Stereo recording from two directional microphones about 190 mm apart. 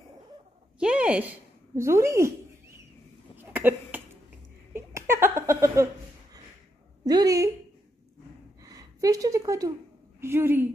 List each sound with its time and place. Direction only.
0.7 s a woman's voice: 5° right (ahead or behind)
3.3 s cough: 10° right (ahead or behind)
4.7 s a sound: 10° right (ahead or behind)
7.1 s a woman's voice: 20° right (ahead or behind)
8.6 s a woman's voice: 20° right (ahead or behind)